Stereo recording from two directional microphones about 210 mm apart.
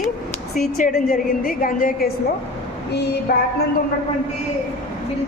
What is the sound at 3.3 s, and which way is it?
Speech, 45° left (ahead or behind).